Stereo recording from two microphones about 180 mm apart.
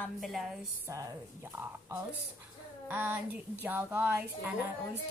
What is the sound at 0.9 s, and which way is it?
Speech, 20° right (ahead or behind).